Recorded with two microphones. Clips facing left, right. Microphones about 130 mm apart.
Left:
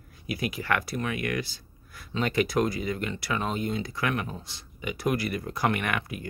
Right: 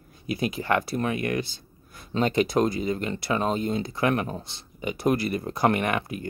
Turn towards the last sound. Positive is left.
turn(degrees=-30)  # may be behind; listen again after turning